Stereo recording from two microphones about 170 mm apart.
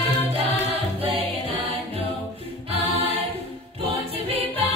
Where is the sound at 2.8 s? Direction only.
35° right (ahead or behind).